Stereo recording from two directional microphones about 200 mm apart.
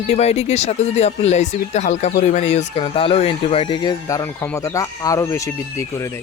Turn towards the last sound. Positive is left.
turn(degrees=15)  # may be behind; listen again after turning